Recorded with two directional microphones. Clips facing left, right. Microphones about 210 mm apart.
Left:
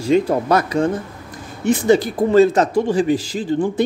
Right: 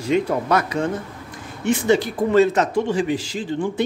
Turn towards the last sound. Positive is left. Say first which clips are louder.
# left 4 dB
turn(degrees=40)  # may be behind; listen again after turning